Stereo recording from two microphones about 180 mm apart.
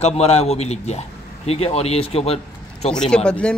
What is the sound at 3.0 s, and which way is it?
Speech, 5° left (ahead or behind).